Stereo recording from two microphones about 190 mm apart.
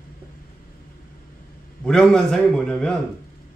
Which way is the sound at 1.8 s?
5° left (ahead or behind).